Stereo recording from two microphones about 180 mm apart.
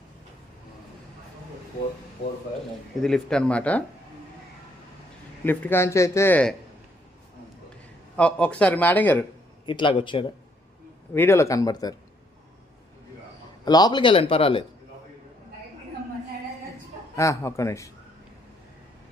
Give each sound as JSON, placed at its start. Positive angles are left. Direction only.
{"t": 3.0, "sound": "speech", "side_deg": 5}
{"t": 5.5, "sound": "a man's voice", "side_deg": 10}
{"t": 8.1, "sound": "a man's voice", "side_deg": 5}
{"t": 9.6, "sound": "speech", "side_deg": 25}
{"t": 11.1, "sound": "a man's voice", "side_deg": 15}
{"t": 13.7, "sound": "speech", "side_deg": 20}
{"t": 17.2, "sound": "a man's voice", "side_deg": 15}